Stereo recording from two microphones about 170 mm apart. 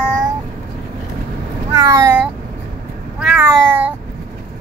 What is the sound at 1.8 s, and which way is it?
Meow, 20° right (ahead or behind).